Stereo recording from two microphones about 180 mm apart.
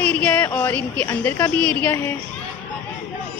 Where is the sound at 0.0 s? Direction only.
10° left (ahead or behind).